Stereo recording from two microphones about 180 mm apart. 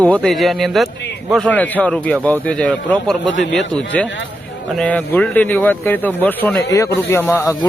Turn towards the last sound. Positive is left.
turn(degrees=15)  # may be behind; listen again after turning